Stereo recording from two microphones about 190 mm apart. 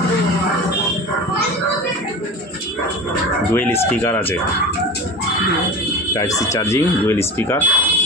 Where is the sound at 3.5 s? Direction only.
10° left (ahead or behind).